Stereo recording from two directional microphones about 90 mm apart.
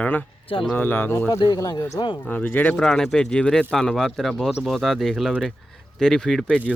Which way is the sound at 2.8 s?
5° left (ahead or behind).